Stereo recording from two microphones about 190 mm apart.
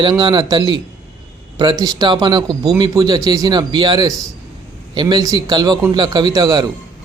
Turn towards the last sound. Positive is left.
turn(degrees=-20)  # may be behind; listen again after turning